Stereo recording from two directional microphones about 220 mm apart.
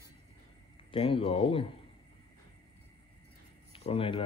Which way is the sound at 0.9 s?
25° left (ahead or behind).